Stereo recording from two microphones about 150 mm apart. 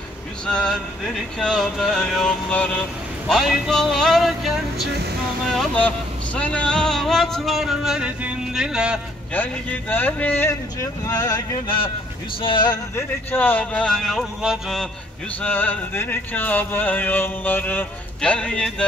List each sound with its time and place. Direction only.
0.5 s speech: 5° left (ahead or behind)
3.3 s music: centre (ahead or behind)
5.6 s speech: 10° left (ahead or behind)
9.3 s a sound: 10° left (ahead or behind); by 11.9 s 35° left (ahead or behind)
12.4 s speech: 35° left (ahead or behind)
13.3 s speech: 10° left (ahead or behind)
15.4 s a sound: 10° left (ahead or behind)